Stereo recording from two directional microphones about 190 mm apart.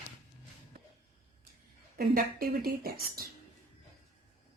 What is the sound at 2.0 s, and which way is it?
A woman's voice, 55° right (ahead or behind).